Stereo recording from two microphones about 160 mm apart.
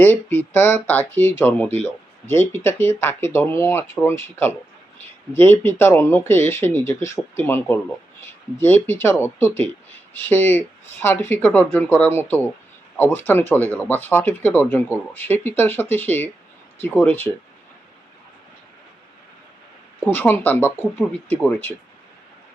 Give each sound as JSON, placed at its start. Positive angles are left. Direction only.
{"t": 0.0, "sound": "speech", "side_deg": 15}
{"t": 20.1, "sound": "speech", "side_deg": 15}